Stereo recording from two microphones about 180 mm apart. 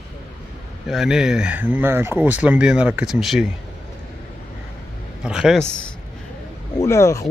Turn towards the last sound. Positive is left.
turn(degrees=15)  # may be behind; listen again after turning